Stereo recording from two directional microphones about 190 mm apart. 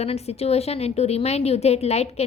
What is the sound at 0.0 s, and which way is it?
A woman's voice, 35° left (ahead or behind).